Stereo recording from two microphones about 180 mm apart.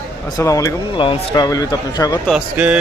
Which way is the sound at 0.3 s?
20° left (ahead or behind).